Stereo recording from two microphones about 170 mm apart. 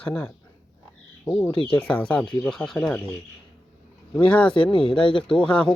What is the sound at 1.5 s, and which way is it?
Speech, 30° left (ahead or behind).